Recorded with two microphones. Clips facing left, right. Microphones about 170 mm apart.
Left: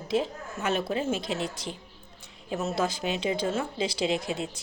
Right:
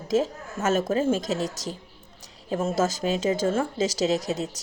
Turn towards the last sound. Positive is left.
turn(degrees=-40)  # may be behind; listen again after turning